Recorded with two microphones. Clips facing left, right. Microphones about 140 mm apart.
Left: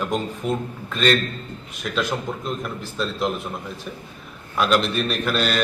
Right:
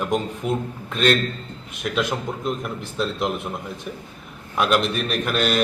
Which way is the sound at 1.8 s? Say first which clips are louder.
Right 1 dB; 15° right (ahead or behind).